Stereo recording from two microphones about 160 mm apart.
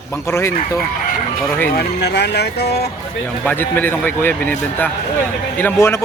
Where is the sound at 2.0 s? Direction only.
90° left.